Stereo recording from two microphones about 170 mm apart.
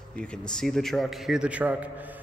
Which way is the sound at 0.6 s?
5° left (ahead or behind).